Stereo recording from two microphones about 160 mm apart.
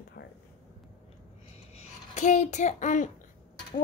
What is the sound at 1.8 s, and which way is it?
A child's voice, 50° left (ahead or behind).